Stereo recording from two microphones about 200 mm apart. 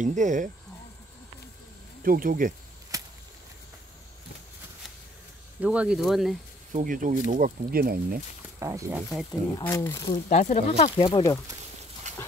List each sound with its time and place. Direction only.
0.0 s speech: 35° right (ahead or behind)
2.0 s speech: 45° right (ahead or behind)
2.9 s a sound: 15° right (ahead or behind)
5.6 s speech: 5° right (ahead or behind)
6.7 s speech: 40° right (ahead or behind)
8.5 s speech: 15° right (ahead or behind)
9.6 s speech: 15° left (ahead or behind)
10.3 s speech: 35° left (ahead or behind)
11.1 s speech: 15° left (ahead or behind)
12.1 s dog: 35° right (ahead or behind)